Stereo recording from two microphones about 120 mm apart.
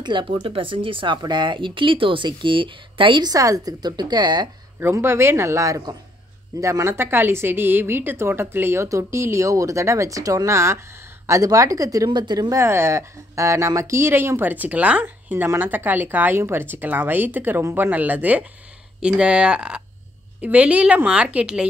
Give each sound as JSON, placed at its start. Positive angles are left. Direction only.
{"t": 0.0, "sound": "speech", "side_deg": -40}
{"t": 4.7, "sound": "a woman's voice", "side_deg": -20}